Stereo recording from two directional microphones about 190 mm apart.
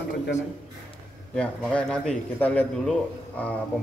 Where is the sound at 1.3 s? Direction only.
5° left (ahead or behind).